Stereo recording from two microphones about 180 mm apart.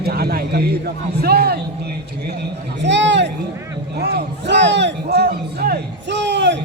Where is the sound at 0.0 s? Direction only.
60° right (ahead or behind).